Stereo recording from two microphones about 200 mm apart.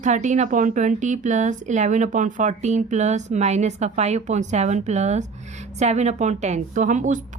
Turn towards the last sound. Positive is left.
turn(degrees=-40)  # may be behind; listen again after turning